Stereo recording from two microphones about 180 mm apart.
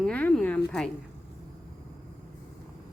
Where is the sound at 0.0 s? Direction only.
5° left (ahead or behind).